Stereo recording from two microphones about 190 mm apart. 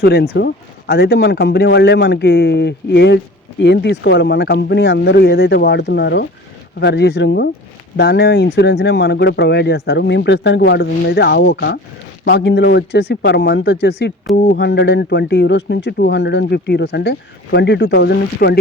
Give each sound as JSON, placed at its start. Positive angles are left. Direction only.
{"t": 0.0, "sound": "speech", "side_deg": 60}